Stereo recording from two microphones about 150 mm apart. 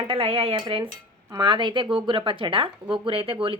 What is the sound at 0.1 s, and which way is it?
Speech, 40° right (ahead or behind).